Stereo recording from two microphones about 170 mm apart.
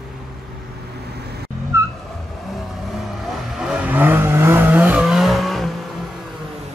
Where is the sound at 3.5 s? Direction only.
5° right (ahead or behind).